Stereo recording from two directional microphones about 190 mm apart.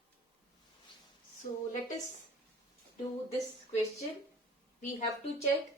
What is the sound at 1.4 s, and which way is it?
Speech, 50° left (ahead or behind).